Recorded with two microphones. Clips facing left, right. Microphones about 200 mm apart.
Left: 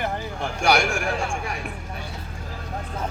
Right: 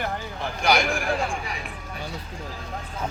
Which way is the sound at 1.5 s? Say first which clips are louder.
Left 3 dB; 45° left (ahead or behind).